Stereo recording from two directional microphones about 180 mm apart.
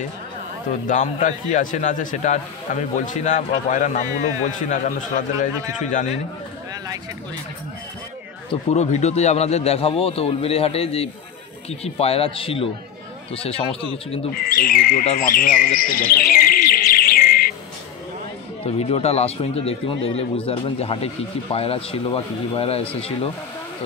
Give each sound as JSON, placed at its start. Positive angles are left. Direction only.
{"t": 0.8, "sound": "a man's voice", "side_deg": 45}
{"t": 8.7, "sound": "speech", "side_deg": 40}
{"t": 14.3, "sound": "speech", "side_deg": 55}
{"t": 18.6, "sound": "speech", "side_deg": 35}